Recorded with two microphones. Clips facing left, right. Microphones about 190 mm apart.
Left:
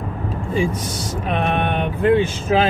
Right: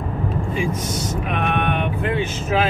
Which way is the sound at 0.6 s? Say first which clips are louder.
Left 5 dB; 30° left (ahead or behind).